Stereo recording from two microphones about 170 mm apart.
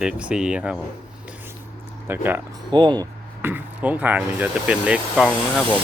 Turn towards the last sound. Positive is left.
turn(degrees=5)  # may be behind; listen again after turning